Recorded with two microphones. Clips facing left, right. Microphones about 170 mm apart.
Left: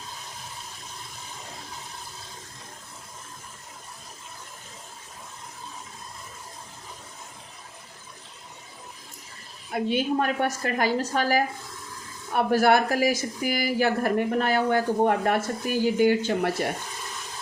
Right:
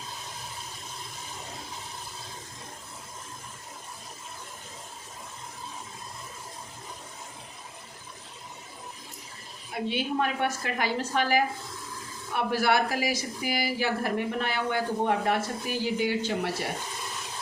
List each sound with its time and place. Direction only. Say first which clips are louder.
9.9 s a woman's voice: left 4 dB; 45° left (ahead or behind)